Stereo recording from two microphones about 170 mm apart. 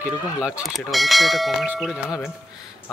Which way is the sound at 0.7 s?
Centre (ahead or behind).